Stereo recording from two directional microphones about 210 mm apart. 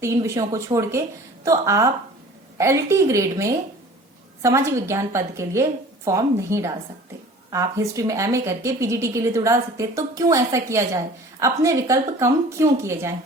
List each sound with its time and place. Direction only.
0.0 s speech: 15° right (ahead or behind)